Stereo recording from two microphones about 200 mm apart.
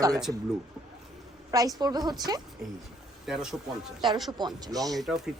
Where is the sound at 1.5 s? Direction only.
20° right (ahead or behind).